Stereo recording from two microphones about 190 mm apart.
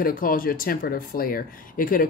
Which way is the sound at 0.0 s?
50° left (ahead or behind).